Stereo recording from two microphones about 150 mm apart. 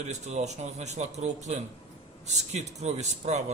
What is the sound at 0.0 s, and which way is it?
A man's voice, 50° right (ahead or behind).